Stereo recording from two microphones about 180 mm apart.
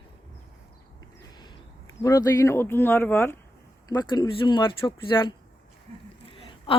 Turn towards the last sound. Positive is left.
turn(degrees=30)  # may be behind; listen again after turning